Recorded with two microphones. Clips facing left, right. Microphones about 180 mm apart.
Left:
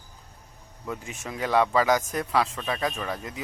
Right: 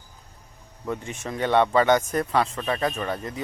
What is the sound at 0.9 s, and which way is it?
Speech, centre (ahead or behind).